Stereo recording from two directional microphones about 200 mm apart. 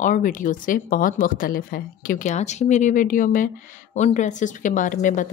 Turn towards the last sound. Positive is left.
turn(degrees=40)  # may be behind; listen again after turning